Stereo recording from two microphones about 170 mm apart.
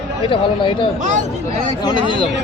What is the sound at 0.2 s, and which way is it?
Speech, 30° left (ahead or behind).